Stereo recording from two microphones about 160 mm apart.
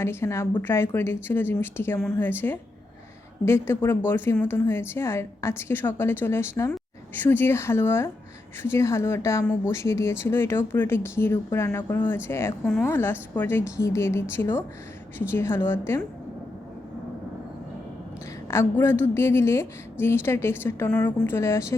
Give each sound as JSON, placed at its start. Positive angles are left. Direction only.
{"t": 0.0, "sound": "a woman's voice", "side_deg": 15}
{"t": 18.4, "sound": "a woman's voice", "side_deg": 15}